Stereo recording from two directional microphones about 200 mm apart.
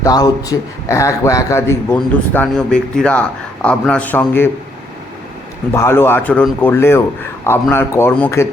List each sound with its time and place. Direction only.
0.0 s a man's voice: 20° left (ahead or behind)
5.7 s a man's voice: 15° left (ahead or behind)